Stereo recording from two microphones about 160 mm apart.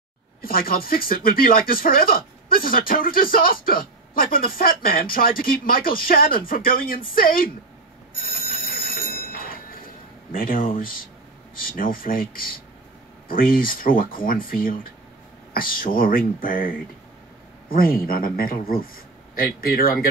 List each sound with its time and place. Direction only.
0.4 s speech: 65° left (ahead or behind)
8.2 s telephone bell ringing: 65° left (ahead or behind)
10.3 s speech: 60° left (ahead or behind)